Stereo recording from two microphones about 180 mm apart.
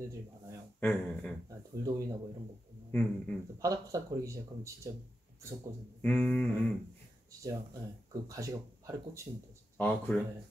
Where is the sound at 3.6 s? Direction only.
20° right (ahead or behind).